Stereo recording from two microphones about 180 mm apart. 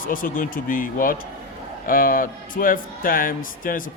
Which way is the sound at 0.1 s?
50° left (ahead or behind).